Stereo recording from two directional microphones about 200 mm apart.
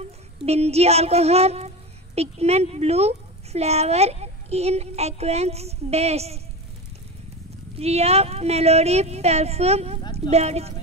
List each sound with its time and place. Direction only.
0.5 s speech: 30° right (ahead or behind)
7.7 s speech: 30° right (ahead or behind)